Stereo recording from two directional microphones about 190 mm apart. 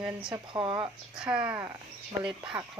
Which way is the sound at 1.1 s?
5° right (ahead or behind).